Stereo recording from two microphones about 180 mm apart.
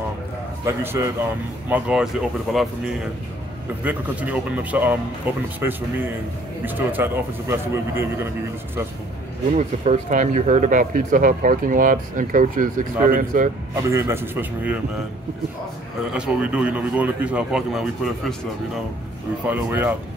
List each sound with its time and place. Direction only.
0.7 s a man's voice: 15° right (ahead or behind)
1.7 s a man's voice: 5° right (ahead or behind)
6.6 s a man's voice: 10° right (ahead or behind)
9.6 s speech: 40° right (ahead or behind)
13.8 s a man's voice: 15° right (ahead or behind)
16.1 s a man's voice: 5° right (ahead or behind)
19.4 s a man's voice: 10° right (ahead or behind)